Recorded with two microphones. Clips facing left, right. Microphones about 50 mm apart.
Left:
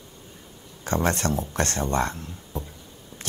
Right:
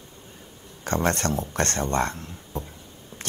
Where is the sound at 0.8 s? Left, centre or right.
Right.